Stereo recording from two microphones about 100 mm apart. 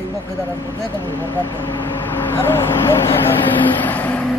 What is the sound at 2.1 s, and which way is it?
Vehicle, 25° left (ahead or behind).